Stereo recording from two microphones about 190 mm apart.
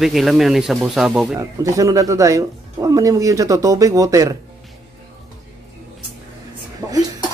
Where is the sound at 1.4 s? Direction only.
15° right (ahead or behind).